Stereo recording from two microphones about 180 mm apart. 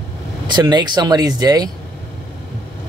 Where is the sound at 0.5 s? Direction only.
25° right (ahead or behind).